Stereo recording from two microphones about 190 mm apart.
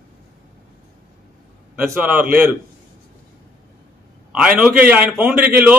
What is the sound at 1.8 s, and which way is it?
Speech, 10° right (ahead or behind).